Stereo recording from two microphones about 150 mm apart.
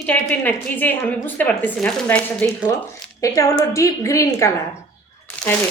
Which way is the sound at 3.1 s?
20° left (ahead or behind).